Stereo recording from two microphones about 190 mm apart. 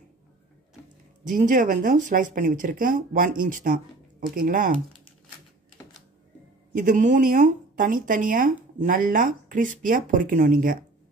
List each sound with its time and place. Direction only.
1.2 s speech: 45° right (ahead or behind)
6.8 s speech: 45° right (ahead or behind)